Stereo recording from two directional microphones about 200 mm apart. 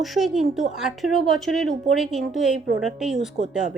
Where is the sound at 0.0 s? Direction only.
Centre (ahead or behind).